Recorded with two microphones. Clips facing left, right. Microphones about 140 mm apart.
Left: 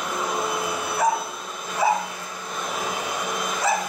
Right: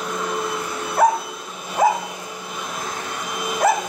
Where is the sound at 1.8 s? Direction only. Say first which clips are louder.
Right 4 dB; 45° right (ahead or behind).